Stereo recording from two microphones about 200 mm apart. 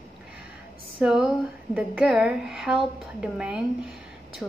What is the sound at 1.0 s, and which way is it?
Speech, 5° right (ahead or behind).